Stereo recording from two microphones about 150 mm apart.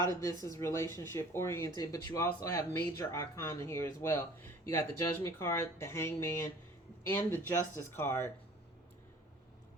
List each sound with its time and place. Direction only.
0.0 s speech: 20° left (ahead or behind)